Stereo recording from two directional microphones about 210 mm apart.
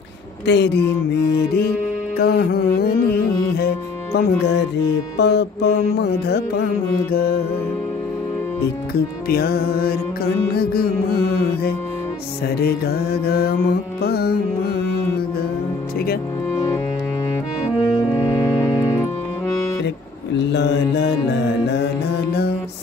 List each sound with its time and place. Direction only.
0.5 s music: 55° left (ahead or behind)
2.1 s music: 50° left (ahead or behind)
9.3 s music: 45° left (ahead or behind)
12.6 s music: 45° left (ahead or behind)
18.3 s music: 15° left (ahead or behind)
20.3 s mantra: 55° left (ahead or behind)